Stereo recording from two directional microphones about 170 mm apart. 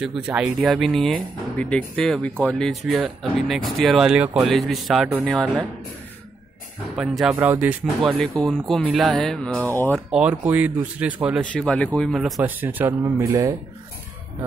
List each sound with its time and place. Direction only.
0.0 s speech: 5° right (ahead or behind)
7.0 s speech: 5° right (ahead or behind)
8.2 s speech: centre (ahead or behind)
10.1 s speech: 5° right (ahead or behind)
11.5 s speech: 5° left (ahead or behind); by 13.6 s 15° right (ahead or behind)